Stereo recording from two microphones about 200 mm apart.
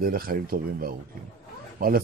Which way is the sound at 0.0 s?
45° right (ahead or behind).